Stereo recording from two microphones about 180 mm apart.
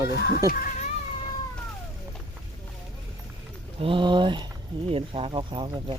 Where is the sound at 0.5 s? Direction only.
45° left (ahead or behind).